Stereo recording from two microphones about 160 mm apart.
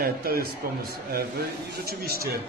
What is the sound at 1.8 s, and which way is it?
Speech, 75° right (ahead or behind).